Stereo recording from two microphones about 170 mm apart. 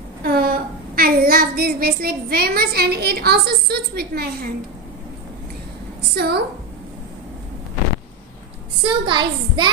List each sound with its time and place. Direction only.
0.2 s a woman's voice: 60° right (ahead or behind)
6.1 s a woman's voice: 70° right (ahead or behind)
8.8 s a child's voice: 30° right (ahead or behind)